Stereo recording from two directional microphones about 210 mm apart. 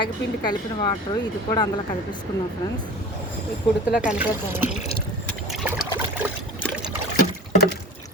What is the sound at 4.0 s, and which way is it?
Speech, 5° right (ahead or behind).